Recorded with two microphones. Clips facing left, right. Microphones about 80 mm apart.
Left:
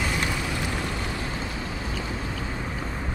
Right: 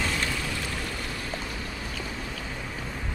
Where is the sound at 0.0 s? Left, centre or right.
Centre.